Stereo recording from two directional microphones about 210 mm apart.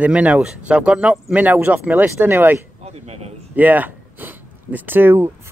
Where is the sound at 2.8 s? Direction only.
30° right (ahead or behind).